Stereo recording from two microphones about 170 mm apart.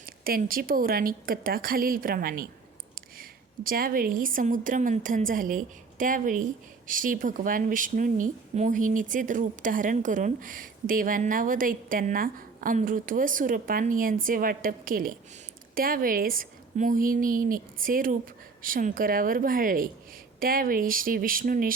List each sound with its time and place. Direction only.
0.0 s a woman's voice: 60° right (ahead or behind)